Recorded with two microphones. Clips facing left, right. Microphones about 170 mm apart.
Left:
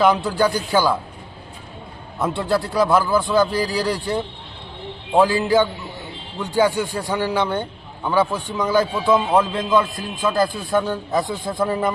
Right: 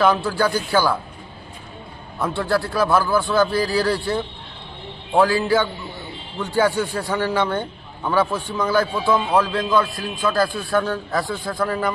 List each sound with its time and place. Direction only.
0.0 s a man's voice: 20° left (ahead or behind)
2.1 s a man's voice: 20° left (ahead or behind)